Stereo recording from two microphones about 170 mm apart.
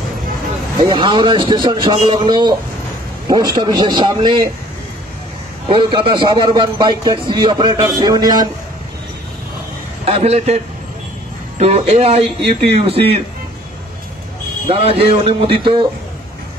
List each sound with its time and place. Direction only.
0.8 s a man's voice: 25° right (ahead or behind)
5.7 s a man's voice: 30° right (ahead or behind)
10.0 s a man's voice: 40° right (ahead or behind)
14.7 s a man's voice: 35° right (ahead or behind)